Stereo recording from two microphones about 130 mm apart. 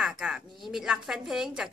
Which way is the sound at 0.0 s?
5° right (ahead or behind).